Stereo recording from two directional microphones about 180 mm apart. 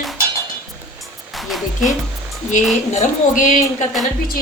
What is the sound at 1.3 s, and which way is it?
Speech, centre (ahead or behind).